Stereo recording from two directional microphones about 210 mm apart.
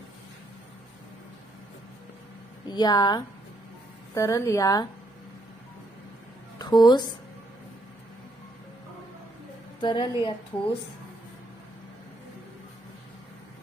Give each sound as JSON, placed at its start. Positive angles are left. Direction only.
{"t": 2.7, "sound": "a woman's voice", "side_deg": 20}
{"t": 6.6, "sound": "a woman's voice", "side_deg": 20}
{"t": 9.8, "sound": "a woman's voice", "side_deg": 20}